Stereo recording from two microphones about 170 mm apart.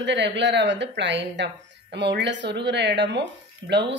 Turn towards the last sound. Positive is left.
turn(degrees=-90)